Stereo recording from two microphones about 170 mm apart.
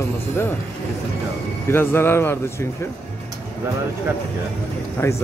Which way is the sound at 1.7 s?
15° left (ahead or behind).